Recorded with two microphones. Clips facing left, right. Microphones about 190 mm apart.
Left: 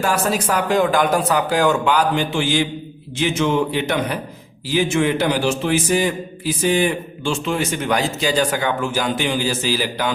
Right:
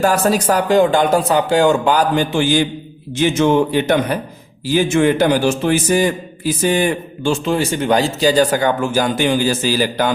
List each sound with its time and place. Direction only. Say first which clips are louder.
0.0 s a man's voice: right 5 dB; 40° right (ahead or behind)